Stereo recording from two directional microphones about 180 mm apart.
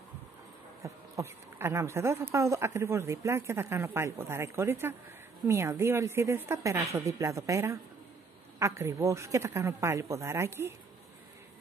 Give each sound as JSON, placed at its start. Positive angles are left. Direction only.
{"t": 0.8, "sound": "speech", "side_deg": -15}